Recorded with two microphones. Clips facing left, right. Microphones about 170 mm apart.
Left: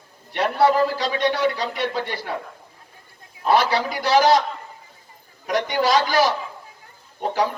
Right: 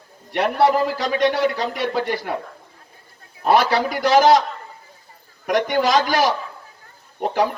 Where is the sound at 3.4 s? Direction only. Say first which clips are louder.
Right 2 dB; 50° right (ahead or behind).